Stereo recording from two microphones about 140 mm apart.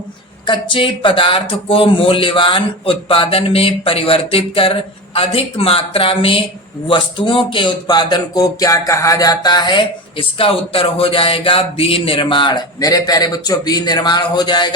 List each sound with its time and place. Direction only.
0.4 s speech: 35° left (ahead or behind)